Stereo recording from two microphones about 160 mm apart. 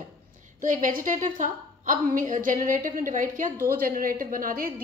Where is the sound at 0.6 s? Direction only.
55° right (ahead or behind).